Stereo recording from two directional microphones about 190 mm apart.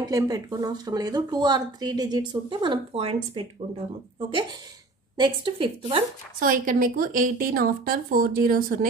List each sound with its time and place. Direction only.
0.0 s speech: 20° right (ahead or behind)
6.4 s a woman's voice: 45° right (ahead or behind)